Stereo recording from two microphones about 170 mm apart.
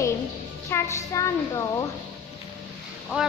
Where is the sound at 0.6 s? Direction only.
15° left (ahead or behind).